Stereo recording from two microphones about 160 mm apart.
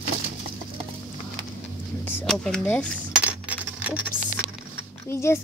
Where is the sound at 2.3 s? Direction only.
5° left (ahead or behind).